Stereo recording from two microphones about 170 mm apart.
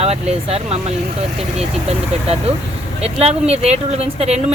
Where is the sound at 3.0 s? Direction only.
40° right (ahead or behind).